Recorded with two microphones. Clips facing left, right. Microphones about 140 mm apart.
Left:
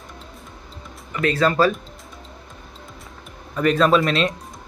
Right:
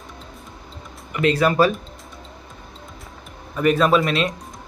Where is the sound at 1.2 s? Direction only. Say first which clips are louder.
Right 1 dB; 15° right (ahead or behind).